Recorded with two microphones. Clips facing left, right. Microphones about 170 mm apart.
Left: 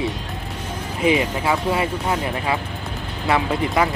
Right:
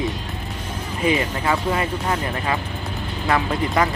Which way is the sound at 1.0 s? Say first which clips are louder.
Left 2 dB; 10° left (ahead or behind).